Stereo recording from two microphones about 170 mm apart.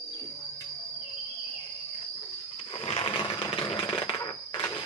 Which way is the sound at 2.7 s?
35° left (ahead or behind).